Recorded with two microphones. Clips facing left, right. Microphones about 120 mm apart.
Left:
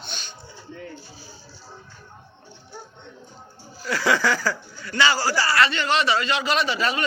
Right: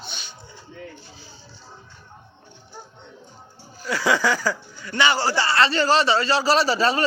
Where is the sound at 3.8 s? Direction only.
15° right (ahead or behind).